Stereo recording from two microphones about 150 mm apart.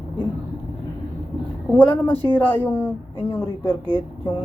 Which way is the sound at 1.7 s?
10° left (ahead or behind).